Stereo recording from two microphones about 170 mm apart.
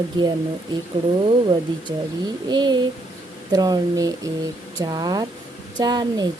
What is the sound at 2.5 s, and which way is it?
Speech, 25° right (ahead or behind).